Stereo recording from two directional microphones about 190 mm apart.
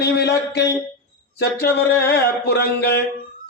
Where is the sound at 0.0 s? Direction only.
60° left (ahead or behind).